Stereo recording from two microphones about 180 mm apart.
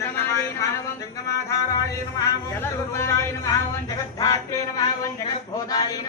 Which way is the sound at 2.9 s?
15° left (ahead or behind).